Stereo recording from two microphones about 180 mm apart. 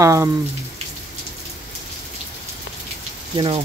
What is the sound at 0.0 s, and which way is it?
Speech, 15° right (ahead or behind).